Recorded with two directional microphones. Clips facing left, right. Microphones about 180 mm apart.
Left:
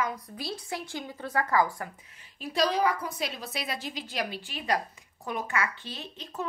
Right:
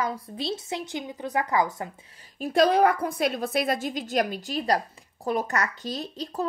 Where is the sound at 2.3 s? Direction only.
50° right (ahead or behind).